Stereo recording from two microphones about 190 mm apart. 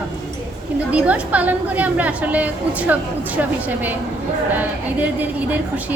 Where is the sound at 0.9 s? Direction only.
5° right (ahead or behind).